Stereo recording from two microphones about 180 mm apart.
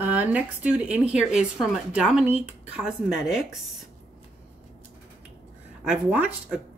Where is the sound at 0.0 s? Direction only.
10° right (ahead or behind).